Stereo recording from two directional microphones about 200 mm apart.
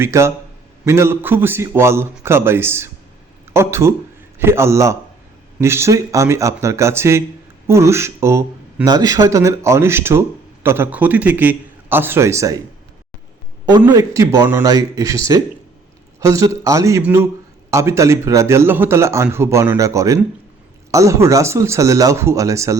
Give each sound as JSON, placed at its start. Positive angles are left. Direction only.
{"t": 0.0, "sound": "speech", "side_deg": -15}
{"t": 13.7, "sound": "speech", "side_deg": -20}